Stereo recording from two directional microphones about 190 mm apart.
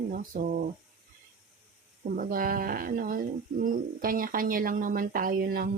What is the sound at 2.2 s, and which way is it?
Speech, 50° right (ahead or behind).